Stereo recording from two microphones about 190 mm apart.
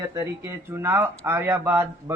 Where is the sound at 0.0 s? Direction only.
15° right (ahead or behind).